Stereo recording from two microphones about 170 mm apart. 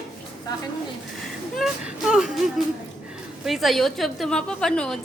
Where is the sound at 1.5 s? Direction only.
Centre (ahead or behind).